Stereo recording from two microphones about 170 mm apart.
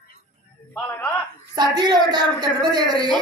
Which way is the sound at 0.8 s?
10° left (ahead or behind).